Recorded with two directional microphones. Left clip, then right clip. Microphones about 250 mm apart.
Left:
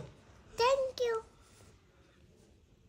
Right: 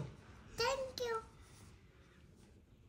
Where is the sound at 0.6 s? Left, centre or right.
Centre.